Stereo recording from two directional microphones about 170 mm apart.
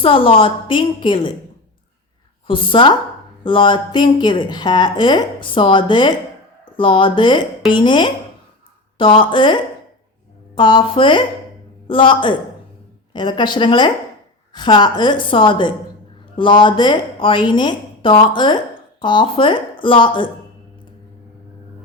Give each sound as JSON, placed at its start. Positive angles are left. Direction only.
{"t": 0.0, "sound": "a woman's voice", "side_deg": 30}
{"t": 2.5, "sound": "a woman's voice", "side_deg": 30}